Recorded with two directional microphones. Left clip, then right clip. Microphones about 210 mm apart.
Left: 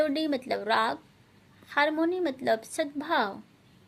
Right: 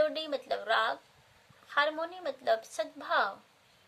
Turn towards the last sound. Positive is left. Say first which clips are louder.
# left 2 dB
turn(degrees=25)  # may be behind; listen again after turning